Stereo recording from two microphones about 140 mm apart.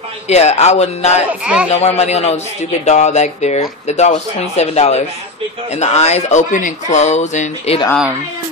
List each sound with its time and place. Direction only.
0.3 s speech: 50° left (ahead or behind)
1.4 s speech: 5° right (ahead or behind)
2.0 s speech: 50° left (ahead or behind)